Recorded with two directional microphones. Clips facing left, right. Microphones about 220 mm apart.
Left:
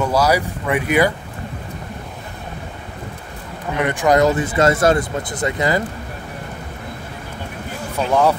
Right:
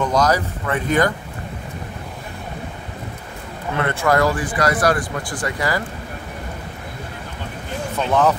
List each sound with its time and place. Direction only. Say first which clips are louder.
0.0 s speech: left 1 dB; 10° left (ahead or behind)
3.7 s speech: left 3 dB; 15° left (ahead or behind)
8.0 s speech: left 1 dB; 10° left (ahead or behind)